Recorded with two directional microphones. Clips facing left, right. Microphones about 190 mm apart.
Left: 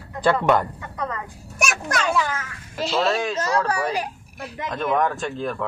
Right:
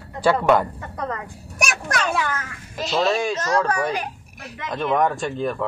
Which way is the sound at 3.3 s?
30° left (ahead or behind).